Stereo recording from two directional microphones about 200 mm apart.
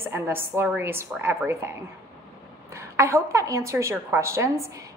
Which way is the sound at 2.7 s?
15° right (ahead or behind).